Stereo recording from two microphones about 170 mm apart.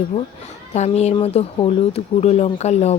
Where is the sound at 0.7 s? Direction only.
40° left (ahead or behind).